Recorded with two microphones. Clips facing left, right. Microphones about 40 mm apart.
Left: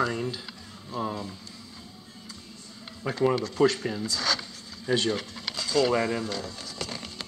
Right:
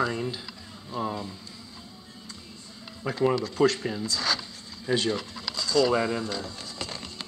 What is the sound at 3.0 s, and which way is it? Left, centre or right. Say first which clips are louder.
Speech: even; centre.